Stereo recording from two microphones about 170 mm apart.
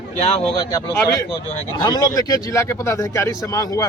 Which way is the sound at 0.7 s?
20° left (ahead or behind).